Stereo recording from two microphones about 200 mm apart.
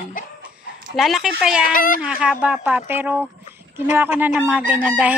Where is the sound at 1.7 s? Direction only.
45° left (ahead or behind).